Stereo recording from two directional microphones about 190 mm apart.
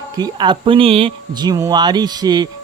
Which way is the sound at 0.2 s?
25° right (ahead or behind).